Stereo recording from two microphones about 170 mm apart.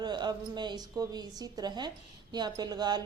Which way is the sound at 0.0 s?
25° right (ahead or behind).